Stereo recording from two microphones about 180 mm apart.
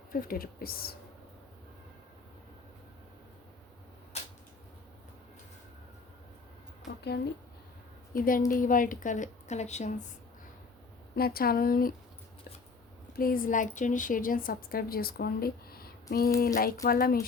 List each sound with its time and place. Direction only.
0.1 s speech: 55° left (ahead or behind)
6.8 s speech: 70° left (ahead or behind)
8.1 s a woman's voice: 50° left (ahead or behind)
11.1 s speech: 55° left (ahead or behind)
13.1 s a woman's voice: 55° left (ahead or behind)